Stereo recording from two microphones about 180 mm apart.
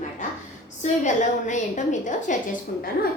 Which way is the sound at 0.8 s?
40° left (ahead or behind).